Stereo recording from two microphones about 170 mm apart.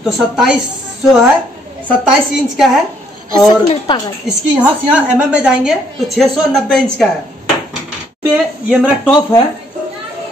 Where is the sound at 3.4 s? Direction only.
25° left (ahead or behind).